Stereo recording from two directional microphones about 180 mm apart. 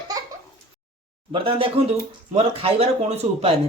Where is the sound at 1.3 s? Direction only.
30° right (ahead or behind).